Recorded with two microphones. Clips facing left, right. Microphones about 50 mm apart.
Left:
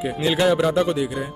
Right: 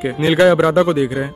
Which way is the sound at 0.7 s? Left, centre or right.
Right.